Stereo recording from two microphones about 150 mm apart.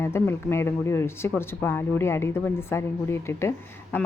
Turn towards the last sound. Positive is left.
turn(degrees=15)  # may be behind; listen again after turning